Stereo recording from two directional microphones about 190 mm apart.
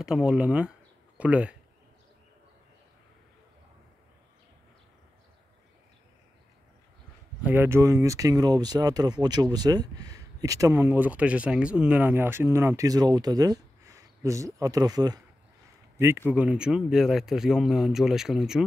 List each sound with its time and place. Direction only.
0.0 s speech: 5° right (ahead or behind)
7.4 s speech: 10° right (ahead or behind)